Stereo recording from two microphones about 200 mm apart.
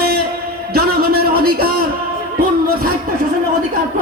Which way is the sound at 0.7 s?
50° right (ahead or behind).